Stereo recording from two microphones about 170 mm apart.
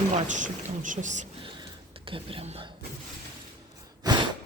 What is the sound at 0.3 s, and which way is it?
Speech, 50° right (ahead or behind).